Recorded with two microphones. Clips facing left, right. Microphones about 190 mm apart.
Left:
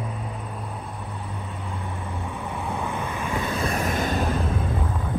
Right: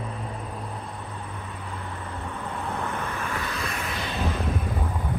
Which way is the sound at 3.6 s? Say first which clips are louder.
Left 7 dB; 45° left (ahead or behind).